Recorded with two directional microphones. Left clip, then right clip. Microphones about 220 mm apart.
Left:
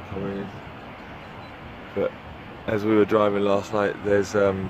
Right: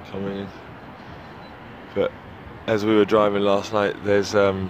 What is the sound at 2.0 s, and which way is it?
Speech, 40° right (ahead or behind).